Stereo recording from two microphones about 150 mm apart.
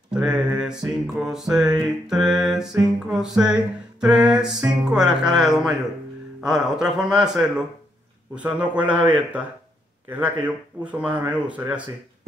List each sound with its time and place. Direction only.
0.1 s music: 5° right (ahead or behind)
8.4 s speech: 10° right (ahead or behind)